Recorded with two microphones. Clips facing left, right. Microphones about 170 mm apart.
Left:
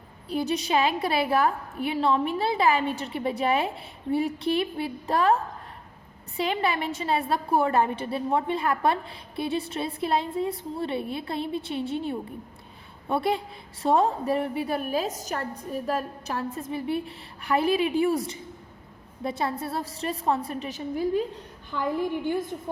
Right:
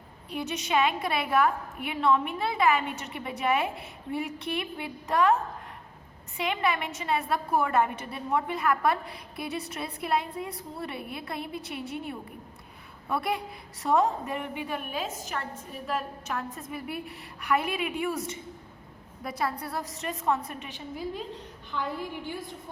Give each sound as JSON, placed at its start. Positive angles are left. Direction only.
{"t": 0.3, "sound": "a woman's voice", "side_deg": 35}